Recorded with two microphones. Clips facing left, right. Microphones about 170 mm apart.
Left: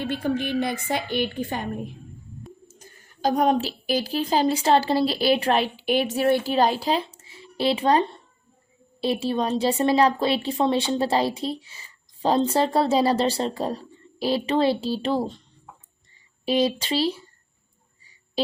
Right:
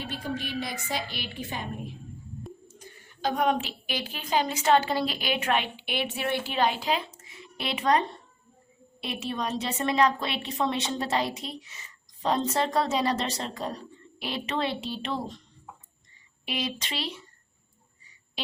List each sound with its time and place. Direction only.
0.0 s a woman's voice: 55° left (ahead or behind)
2.6 s a woman's voice: 40° left (ahead or behind)
16.5 s a woman's voice: 35° left (ahead or behind)